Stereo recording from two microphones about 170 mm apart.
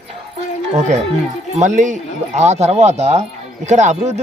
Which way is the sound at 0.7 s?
45° right (ahead or behind).